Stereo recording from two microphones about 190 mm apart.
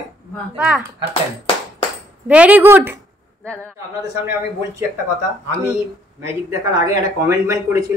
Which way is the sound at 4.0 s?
15° right (ahead or behind).